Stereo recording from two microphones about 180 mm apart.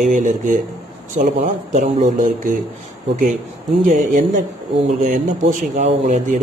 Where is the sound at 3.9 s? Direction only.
45° right (ahead or behind).